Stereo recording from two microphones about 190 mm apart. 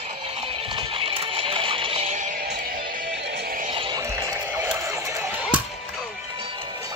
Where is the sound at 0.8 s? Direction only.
30° right (ahead or behind).